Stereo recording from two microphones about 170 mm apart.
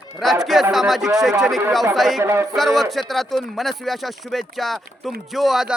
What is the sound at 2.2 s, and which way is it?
Speech, 15° right (ahead or behind).